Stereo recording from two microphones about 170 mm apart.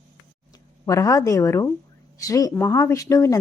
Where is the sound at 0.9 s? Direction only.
20° left (ahead or behind).